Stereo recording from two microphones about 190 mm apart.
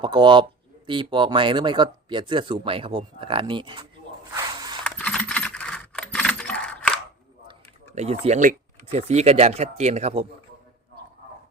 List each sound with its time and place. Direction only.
0.0 s speech: 25° right (ahead or behind)
4.8 s computer keyboard: 5° left (ahead or behind)
7.9 s speech: 35° right (ahead or behind)